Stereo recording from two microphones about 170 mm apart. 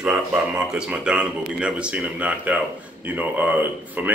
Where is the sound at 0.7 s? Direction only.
5° right (ahead or behind).